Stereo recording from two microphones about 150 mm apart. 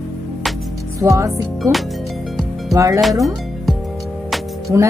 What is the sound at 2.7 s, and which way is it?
Speech, 20° right (ahead or behind).